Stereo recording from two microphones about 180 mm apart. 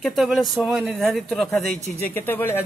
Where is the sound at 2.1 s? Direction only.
10° left (ahead or behind).